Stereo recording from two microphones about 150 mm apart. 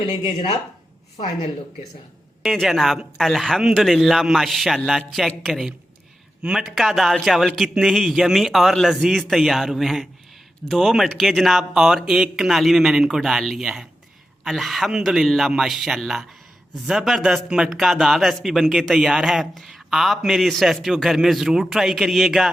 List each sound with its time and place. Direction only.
0.0 s speech: 30° left (ahead or behind)
2.4 s speech: centre (ahead or behind)